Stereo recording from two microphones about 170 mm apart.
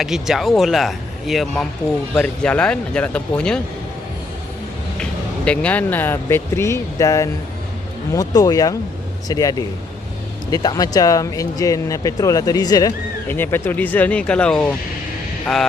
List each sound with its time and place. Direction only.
0.0 s speech: centre (ahead or behind)
5.5 s speech: 10° left (ahead or behind)